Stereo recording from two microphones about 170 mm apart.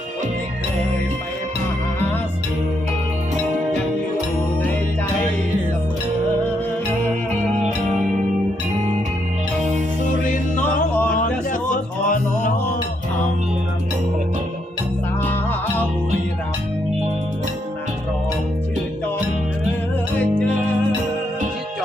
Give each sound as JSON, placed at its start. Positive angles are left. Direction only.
{"t": 12.0, "sound": "mantra", "side_deg": 50}